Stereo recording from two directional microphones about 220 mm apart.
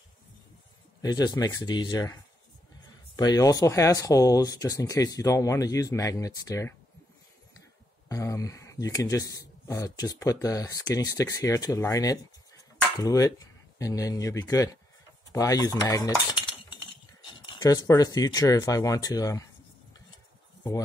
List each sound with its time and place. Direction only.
1.0 s speech: 15° left (ahead or behind)
3.2 s speech: 15° left (ahead or behind)
8.1 s speech: 15° left (ahead or behind)
15.3 s a sound: 15° left (ahead or behind)